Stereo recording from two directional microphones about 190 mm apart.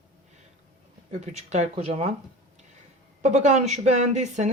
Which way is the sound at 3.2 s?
35° right (ahead or behind).